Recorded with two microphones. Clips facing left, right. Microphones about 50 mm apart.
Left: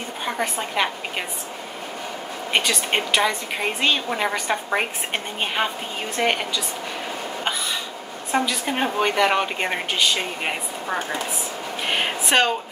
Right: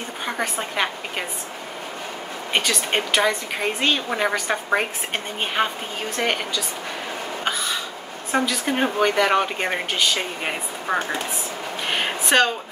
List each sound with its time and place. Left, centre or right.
0.2 s a woman's voice: centre
2.5 s a woman's voice: centre
8.3 s a woman's voice: centre
11.9 s a sound: centre